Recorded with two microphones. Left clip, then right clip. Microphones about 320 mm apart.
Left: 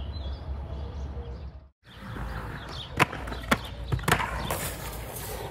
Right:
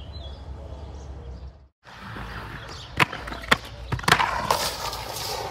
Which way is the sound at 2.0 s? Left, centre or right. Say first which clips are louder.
Right 2 dB; centre.